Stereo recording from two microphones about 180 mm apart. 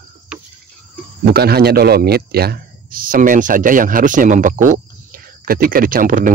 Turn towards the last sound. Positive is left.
turn(degrees=-50)  # may be behind; listen again after turning